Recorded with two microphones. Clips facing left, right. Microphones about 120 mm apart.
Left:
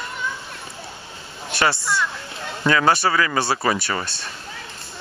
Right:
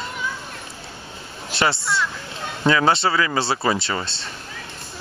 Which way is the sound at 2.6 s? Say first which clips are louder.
Even; 25° right (ahead or behind).